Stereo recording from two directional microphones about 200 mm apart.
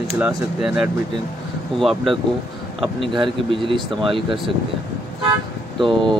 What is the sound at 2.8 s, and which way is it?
Speech, 25° right (ahead or behind).